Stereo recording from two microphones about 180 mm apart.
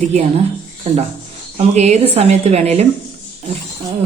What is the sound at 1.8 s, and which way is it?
Speech, 40° right (ahead or behind).